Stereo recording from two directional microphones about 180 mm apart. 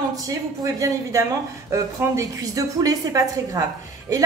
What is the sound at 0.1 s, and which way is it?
A woman's voice, 20° right (ahead or behind).